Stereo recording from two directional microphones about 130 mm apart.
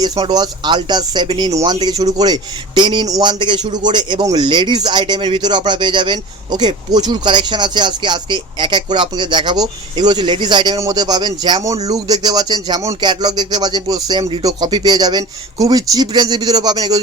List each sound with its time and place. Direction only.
0.0 s a man's voice: 30° right (ahead or behind)